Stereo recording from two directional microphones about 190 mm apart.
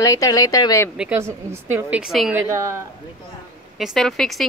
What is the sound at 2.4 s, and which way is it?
Speech, 15° right (ahead or behind).